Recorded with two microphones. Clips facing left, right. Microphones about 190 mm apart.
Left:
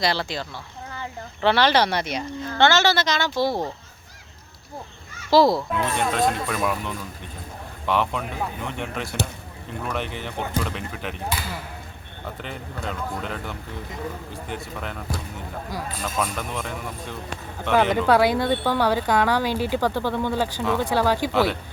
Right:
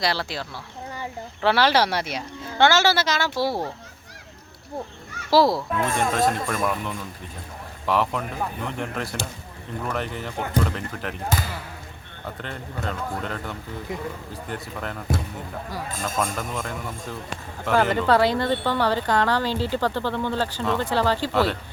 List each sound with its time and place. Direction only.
0.0 s speech: centre (ahead or behind)
5.3 s speech: centre (ahead or behind)
11.3 s speech: 45° right (ahead or behind)
12.4 s speech: centre (ahead or behind)
16.3 s speech: 5° right (ahead or behind)